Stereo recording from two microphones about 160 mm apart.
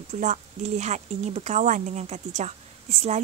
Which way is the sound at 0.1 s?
50° right (ahead or behind).